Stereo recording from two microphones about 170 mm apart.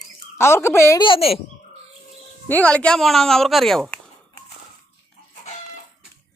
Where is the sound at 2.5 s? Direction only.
10° left (ahead or behind).